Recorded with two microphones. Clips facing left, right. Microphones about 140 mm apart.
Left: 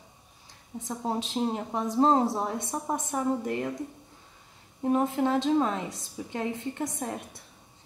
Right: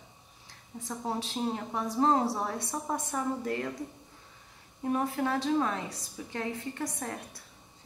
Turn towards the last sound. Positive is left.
turn(degrees=20)  # may be behind; listen again after turning